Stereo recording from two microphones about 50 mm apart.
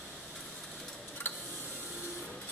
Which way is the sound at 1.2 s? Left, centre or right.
Left.